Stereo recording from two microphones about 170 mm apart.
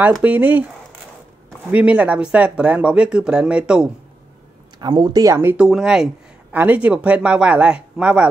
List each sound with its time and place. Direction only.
0.0 s speech: 10° right (ahead or behind)
4.7 s speech: 25° right (ahead or behind); by 8.3 s 5° right (ahead or behind)